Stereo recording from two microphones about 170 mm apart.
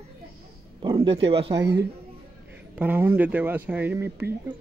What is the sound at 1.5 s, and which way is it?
Speech, 90° right.